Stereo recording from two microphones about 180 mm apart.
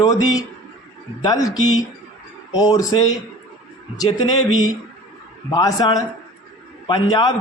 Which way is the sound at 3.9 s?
20° left (ahead or behind).